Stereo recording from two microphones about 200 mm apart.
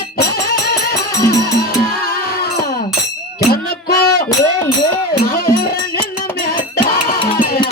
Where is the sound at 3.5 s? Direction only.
50° left (ahead or behind).